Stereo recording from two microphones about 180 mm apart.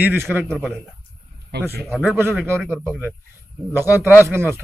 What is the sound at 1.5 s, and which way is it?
Speech, 65° right (ahead or behind).